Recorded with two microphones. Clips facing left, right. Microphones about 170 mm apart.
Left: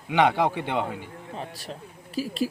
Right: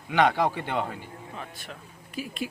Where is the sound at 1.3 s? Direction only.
35° left (ahead or behind).